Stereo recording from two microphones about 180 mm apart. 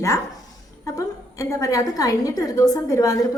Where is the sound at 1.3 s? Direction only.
15° left (ahead or behind).